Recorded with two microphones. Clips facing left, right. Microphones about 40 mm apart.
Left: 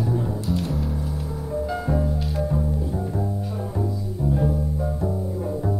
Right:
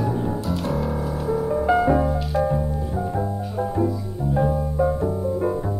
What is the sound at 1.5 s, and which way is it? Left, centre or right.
Music, right.